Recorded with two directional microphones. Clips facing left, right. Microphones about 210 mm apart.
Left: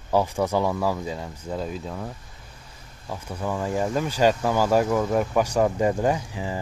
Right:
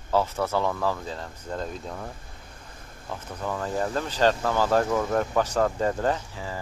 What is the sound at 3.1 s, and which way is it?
Speech, 10° left (ahead or behind).